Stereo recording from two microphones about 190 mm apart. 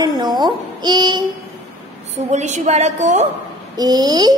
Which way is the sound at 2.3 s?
40° right (ahead or behind).